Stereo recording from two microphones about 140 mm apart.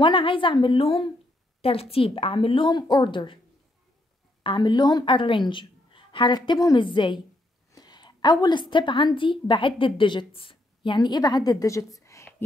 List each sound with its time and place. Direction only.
0.0 s a woman's voice: 40° left (ahead or behind)
4.4 s a woman's voice: 35° left (ahead or behind)